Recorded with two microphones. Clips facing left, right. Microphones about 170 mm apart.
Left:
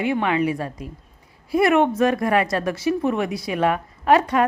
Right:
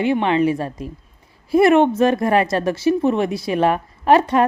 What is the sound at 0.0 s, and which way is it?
A woman's voice, 30° right (ahead or behind).